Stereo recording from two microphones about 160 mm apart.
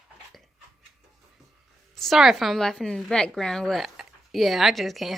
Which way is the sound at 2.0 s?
Centre (ahead or behind).